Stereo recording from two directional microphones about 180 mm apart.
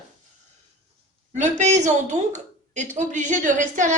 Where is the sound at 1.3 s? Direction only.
40° right (ahead or behind).